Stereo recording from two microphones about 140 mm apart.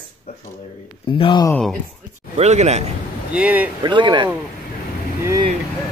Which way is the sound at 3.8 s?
35° right (ahead or behind).